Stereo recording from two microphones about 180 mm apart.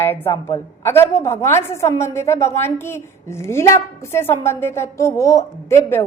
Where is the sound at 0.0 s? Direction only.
10° left (ahead or behind).